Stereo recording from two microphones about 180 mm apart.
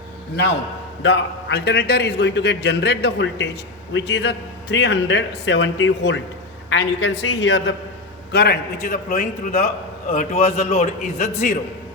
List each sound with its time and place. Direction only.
1.0 s a man's voice: 75° left (ahead or behind)
8.3 s a man's voice: 60° left (ahead or behind); by 11.5 s 40° left (ahead or behind)